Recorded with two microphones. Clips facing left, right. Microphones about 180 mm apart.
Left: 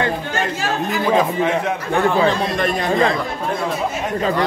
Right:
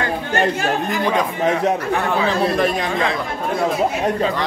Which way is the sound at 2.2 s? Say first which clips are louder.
Right 1 dB; 5° right (ahead or behind).